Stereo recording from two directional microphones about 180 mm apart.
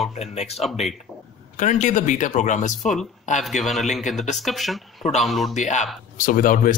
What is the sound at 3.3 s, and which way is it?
Speech, 45° left (ahead or behind).